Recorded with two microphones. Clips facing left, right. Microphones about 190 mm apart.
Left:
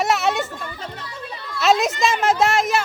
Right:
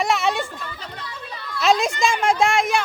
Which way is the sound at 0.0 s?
Centre (ahead or behind).